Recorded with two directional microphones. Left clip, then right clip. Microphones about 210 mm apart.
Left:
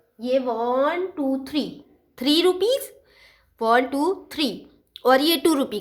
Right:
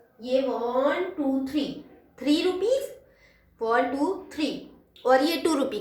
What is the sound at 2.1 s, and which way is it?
A woman's voice, 45° left (ahead or behind).